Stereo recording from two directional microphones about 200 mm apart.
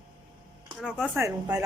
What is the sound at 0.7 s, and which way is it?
Speech, 5° right (ahead or behind).